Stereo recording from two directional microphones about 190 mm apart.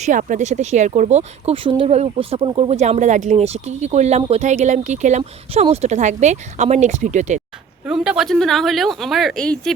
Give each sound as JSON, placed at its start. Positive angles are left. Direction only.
{"t": 0.0, "sound": "speech", "side_deg": -45}
{"t": 7.9, "sound": "speech", "side_deg": -5}